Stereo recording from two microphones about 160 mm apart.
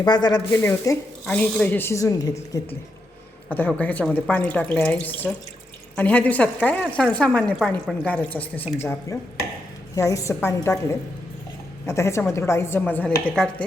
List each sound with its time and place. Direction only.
0.0 s a woman's voice: 25° left (ahead or behind); by 13.7 s 5° left (ahead or behind)